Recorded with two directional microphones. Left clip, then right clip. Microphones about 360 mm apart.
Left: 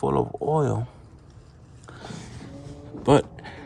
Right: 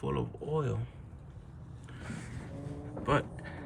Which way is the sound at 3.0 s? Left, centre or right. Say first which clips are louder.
Left 11 dB; centre.